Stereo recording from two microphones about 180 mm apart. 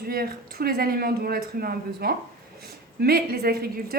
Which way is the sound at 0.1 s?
55° right (ahead or behind).